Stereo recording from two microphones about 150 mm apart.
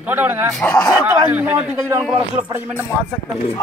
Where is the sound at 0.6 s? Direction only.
5° left (ahead or behind).